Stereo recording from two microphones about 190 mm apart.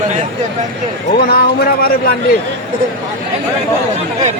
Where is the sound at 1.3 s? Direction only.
55° left (ahead or behind).